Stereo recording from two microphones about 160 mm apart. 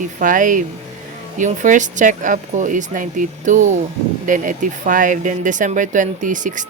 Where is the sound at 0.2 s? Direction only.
55° right (ahead or behind).